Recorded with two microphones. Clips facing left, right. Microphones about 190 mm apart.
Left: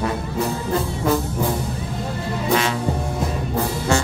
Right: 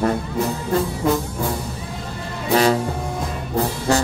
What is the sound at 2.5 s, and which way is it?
Music, 40° right (ahead or behind).